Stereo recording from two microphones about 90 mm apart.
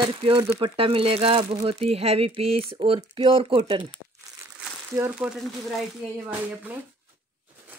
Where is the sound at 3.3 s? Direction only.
75° right (ahead or behind).